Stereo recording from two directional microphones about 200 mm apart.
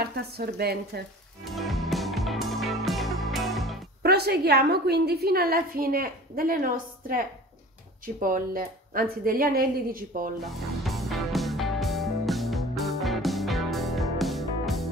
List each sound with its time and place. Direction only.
0.0 s a woman's voice: 50° right (ahead or behind)
1.4 s music: centre (ahead or behind)
4.0 s a woman's voice: 50° right (ahead or behind)
10.4 s music: centre (ahead or behind)